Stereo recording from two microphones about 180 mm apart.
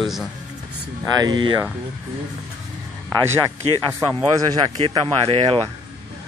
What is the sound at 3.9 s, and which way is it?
Speech, 20° right (ahead or behind).